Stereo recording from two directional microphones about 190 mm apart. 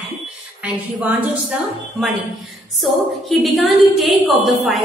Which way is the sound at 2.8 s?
Centre (ahead or behind).